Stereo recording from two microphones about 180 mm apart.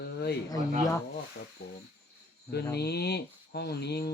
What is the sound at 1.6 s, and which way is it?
Speech, 55° left (ahead or behind).